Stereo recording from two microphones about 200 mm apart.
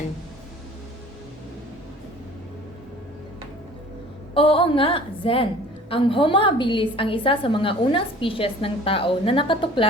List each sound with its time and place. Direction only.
4.4 s a woman's voice: 30° left (ahead or behind)